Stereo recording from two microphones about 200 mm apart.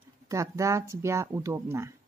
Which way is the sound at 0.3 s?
15° right (ahead or behind).